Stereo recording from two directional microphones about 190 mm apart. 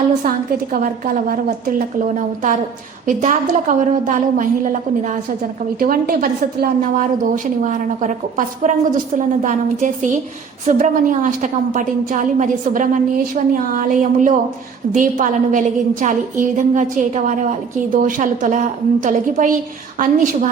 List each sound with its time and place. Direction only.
0.7 s a woman's voice: 50° right (ahead or behind)